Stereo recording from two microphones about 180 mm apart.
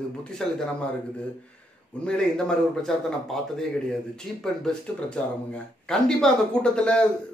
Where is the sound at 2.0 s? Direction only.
5° left (ahead or behind).